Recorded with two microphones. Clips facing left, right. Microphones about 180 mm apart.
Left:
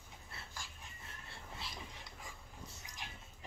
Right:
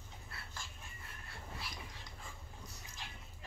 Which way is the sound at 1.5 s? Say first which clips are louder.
Left 2 dB; 15° left (ahead or behind).